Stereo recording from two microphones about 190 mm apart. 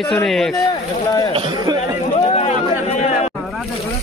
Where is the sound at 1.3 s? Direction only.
25° right (ahead or behind).